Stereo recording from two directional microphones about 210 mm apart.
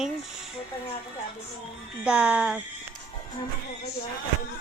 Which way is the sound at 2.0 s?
5° right (ahead or behind).